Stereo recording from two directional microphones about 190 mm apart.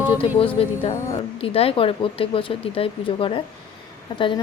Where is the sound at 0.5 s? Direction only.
30° left (ahead or behind).